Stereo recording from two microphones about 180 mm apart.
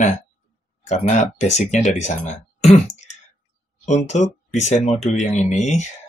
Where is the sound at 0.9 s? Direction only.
40° left (ahead or behind).